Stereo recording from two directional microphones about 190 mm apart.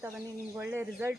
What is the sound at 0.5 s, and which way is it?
Speech, 10° right (ahead or behind).